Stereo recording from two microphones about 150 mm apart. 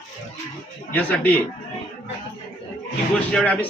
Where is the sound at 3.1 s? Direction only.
10° left (ahead or behind).